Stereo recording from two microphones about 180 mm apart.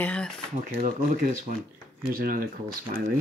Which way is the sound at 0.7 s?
45° right (ahead or behind).